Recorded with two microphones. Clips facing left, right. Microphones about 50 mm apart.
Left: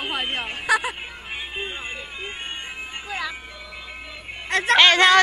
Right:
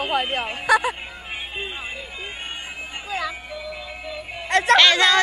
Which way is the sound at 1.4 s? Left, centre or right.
Centre.